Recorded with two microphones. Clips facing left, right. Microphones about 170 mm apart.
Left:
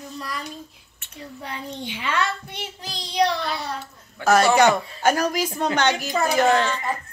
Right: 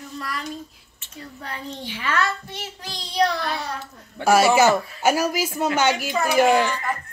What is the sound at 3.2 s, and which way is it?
Child singing, 20° left (ahead or behind).